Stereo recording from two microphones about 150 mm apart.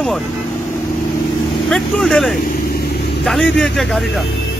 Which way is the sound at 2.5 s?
85° left.